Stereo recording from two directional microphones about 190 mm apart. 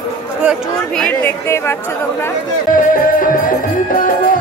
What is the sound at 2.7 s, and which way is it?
Music, 45° left (ahead or behind).